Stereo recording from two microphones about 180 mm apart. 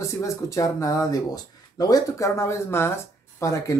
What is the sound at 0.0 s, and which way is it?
Speech, 15° left (ahead or behind).